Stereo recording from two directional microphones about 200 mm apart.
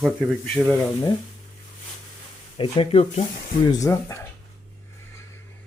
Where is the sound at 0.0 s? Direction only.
5° left (ahead or behind).